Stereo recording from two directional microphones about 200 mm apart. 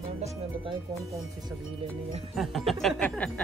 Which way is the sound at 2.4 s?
Centre (ahead or behind).